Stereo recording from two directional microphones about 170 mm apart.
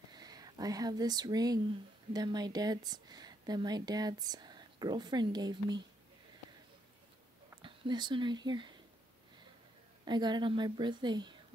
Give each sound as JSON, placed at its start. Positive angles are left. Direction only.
{"t": 0.1, "sound": "speech", "side_deg": -25}
{"t": 7.6, "sound": "speech", "side_deg": -30}
{"t": 10.0, "sound": "a woman's voice", "side_deg": -25}